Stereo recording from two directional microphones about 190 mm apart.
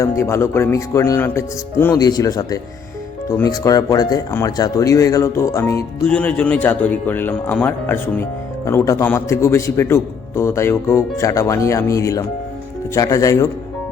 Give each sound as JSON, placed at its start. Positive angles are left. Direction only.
{"t": 0.0, "sound": "a man's voice", "side_deg": 15}